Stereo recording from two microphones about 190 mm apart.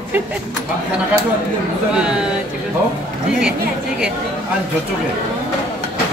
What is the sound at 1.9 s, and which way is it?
Speech, 5° right (ahead or behind).